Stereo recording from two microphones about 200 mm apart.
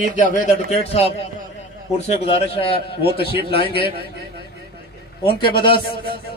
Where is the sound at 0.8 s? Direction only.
30° left (ahead or behind).